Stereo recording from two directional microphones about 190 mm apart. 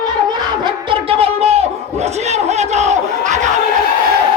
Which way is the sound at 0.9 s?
30° right (ahead or behind).